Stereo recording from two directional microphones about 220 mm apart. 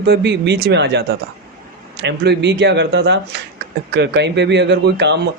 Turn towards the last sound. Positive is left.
turn(degrees=-50)  # may be behind; listen again after turning